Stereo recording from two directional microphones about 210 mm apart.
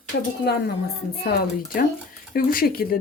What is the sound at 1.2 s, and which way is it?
A woman's voice, 45° left (ahead or behind).